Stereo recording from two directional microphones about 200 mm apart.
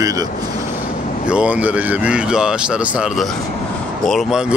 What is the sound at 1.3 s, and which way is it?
Speech, 5° right (ahead or behind).